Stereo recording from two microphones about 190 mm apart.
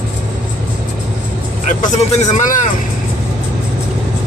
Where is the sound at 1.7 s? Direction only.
40° left (ahead or behind).